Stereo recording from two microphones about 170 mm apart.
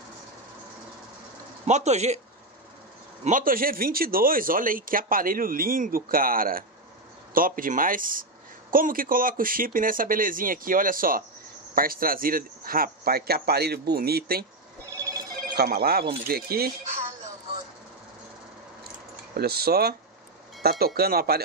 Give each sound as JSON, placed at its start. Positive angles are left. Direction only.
{"t": 1.7, "sound": "speech", "side_deg": -40}
{"t": 3.3, "sound": "speech", "side_deg": -55}
{"t": 15.5, "sound": "speech", "side_deg": -70}
{"t": 19.3, "sound": "speech", "side_deg": -65}